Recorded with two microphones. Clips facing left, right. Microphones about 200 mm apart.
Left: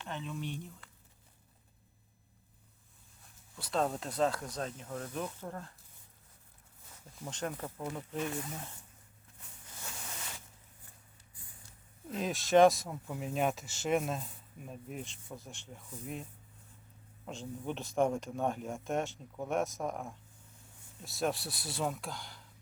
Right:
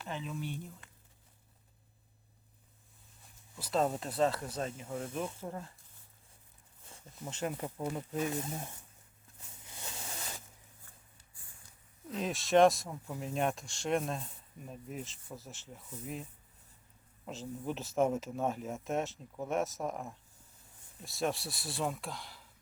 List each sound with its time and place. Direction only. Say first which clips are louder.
0.0 s speech: even; 5° right (ahead or behind)
3.5 s speech: right 1 dB; centre (ahead or behind)
7.2 s speech: right 1 dB; 5° right (ahead or behind)
9.6 s a sound: right 1 dB; 20° right (ahead or behind)
12.1 s speech: left 1 dB; centre (ahead or behind)
17.2 s speech: right 1 dB; centre (ahead or behind)